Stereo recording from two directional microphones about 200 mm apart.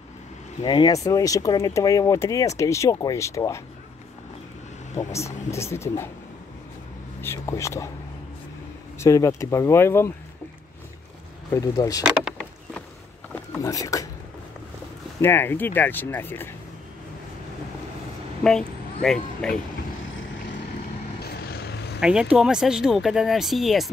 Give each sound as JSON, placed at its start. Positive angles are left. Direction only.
{"t": 0.6, "sound": "speech", "side_deg": 20}
{"t": 4.9, "sound": "speech", "side_deg": 15}
{"t": 7.2, "sound": "speech", "side_deg": 10}
{"t": 8.9, "sound": "speech", "side_deg": 15}
{"t": 11.5, "sound": "speech", "side_deg": 15}
{"t": 12.0, "sound": "rowboat", "side_deg": -5}
{"t": 13.6, "sound": "speech", "side_deg": 15}
{"t": 15.1, "sound": "speech", "side_deg": 10}
{"t": 18.4, "sound": "speech", "side_deg": 5}
{"t": 21.2, "sound": "vehicle", "side_deg": 50}
{"t": 22.0, "sound": "speech", "side_deg": -5}